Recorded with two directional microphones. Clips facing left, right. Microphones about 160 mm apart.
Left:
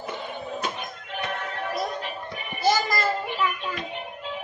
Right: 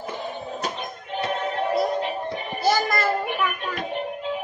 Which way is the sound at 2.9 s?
55° right (ahead or behind).